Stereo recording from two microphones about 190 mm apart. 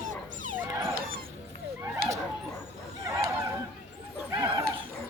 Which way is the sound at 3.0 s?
15° right (ahead or behind).